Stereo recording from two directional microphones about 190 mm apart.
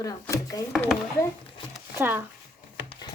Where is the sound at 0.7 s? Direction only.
Centre (ahead or behind).